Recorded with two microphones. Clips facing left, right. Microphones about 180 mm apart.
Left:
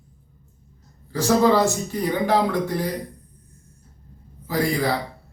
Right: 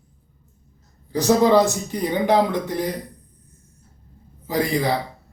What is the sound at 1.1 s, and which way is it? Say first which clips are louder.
A man's voice: right 2 dB; 20° right (ahead or behind).